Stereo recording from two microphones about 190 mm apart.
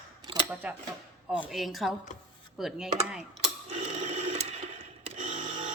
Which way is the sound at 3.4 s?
35° right (ahead or behind).